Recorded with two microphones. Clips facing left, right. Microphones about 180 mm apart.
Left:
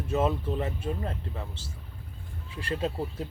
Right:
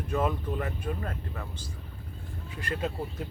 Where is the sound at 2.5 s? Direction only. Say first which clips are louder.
Left 2 dB; 30° left (ahead or behind).